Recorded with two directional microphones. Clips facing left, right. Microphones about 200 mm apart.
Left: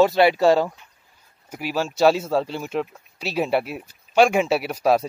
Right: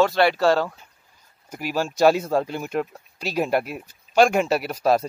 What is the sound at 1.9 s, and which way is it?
Speech, centre (ahead or behind).